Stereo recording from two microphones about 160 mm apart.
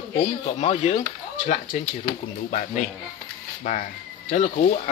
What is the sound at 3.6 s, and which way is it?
Speech, 55° left (ahead or behind).